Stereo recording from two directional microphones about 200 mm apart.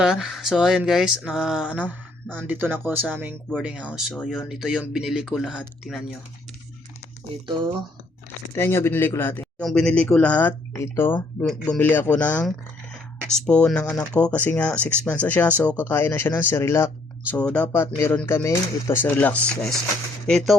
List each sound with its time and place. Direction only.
0.0 s speech: centre (ahead or behind)
8.5 s a man's voice: 10° left (ahead or behind)